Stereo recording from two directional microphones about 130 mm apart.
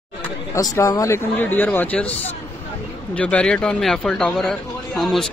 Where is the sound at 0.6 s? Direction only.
30° left (ahead or behind).